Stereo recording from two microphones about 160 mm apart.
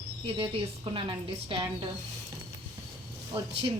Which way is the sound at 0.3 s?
35° right (ahead or behind).